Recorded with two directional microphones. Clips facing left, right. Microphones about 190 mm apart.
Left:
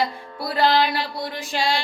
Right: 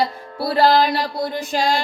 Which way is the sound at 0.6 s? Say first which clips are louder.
Right 3 dB; 40° right (ahead or behind).